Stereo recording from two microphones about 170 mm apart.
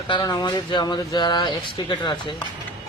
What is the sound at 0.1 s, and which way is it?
Speech, 25° left (ahead or behind).